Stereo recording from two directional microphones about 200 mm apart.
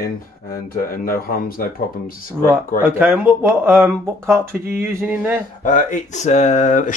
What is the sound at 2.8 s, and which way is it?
Speech, 10° right (ahead or behind).